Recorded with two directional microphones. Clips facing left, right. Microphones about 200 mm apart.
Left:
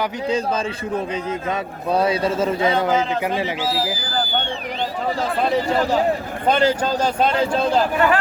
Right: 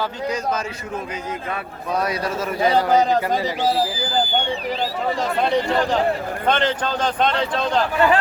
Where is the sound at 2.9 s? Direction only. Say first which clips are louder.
Right 3 dB; 35° right (ahead or behind).